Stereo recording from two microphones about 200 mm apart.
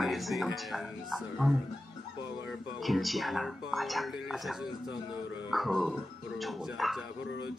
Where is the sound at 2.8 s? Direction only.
Centre (ahead or behind).